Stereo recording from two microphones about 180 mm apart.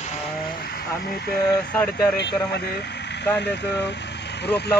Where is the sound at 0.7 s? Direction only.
60° left (ahead or behind).